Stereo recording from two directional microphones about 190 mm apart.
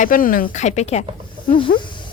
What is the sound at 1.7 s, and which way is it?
Speech, 65° left (ahead or behind).